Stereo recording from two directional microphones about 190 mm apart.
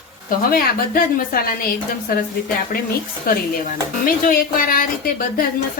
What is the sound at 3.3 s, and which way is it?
Speech, 50° left (ahead or behind).